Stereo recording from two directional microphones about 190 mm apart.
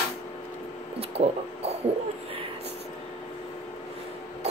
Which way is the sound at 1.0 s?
30° right (ahead or behind).